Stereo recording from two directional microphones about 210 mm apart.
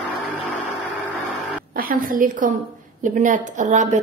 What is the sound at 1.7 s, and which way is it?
A woman's voice, 45° right (ahead or behind).